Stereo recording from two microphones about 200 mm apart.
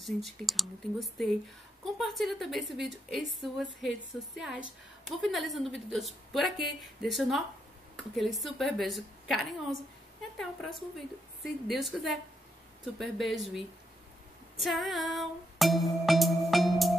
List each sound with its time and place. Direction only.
0.0 s a woman's voice: centre (ahead or behind)
14.6 s music: centre (ahead or behind)